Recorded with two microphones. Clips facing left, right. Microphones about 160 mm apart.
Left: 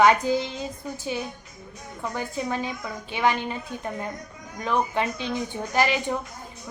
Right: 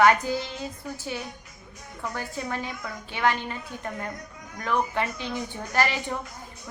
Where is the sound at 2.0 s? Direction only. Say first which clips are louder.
Left 3 dB; 15° left (ahead or behind).